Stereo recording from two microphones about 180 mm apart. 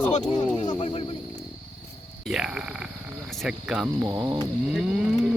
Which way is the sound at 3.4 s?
5° right (ahead or behind).